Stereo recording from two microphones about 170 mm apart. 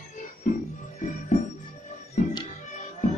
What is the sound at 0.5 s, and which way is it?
Music, 45° left (ahead or behind).